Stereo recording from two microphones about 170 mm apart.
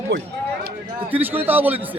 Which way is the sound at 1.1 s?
10° right (ahead or behind).